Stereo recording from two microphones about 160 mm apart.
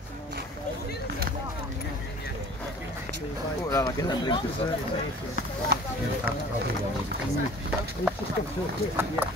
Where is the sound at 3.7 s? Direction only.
25° left (ahead or behind).